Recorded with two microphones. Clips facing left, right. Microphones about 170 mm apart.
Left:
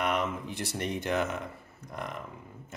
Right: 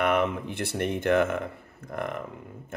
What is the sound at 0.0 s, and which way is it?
Speech, 60° right (ahead or behind).